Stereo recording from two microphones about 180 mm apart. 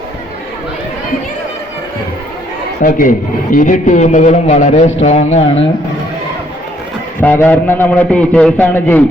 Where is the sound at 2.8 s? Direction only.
50° left (ahead or behind).